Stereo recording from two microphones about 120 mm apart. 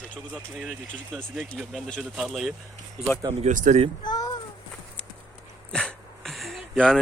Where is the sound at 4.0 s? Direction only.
35° left (ahead or behind).